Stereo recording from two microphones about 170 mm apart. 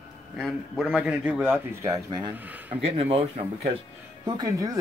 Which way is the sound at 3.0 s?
35° right (ahead or behind).